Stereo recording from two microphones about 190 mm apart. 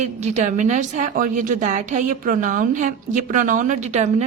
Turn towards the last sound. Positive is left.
turn(degrees=-35)  # may be behind; listen again after turning